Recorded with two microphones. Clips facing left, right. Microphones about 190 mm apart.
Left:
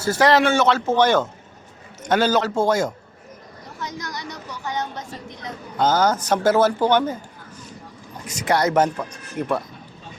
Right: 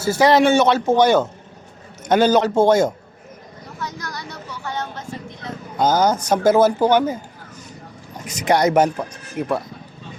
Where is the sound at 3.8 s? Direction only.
20° left (ahead or behind).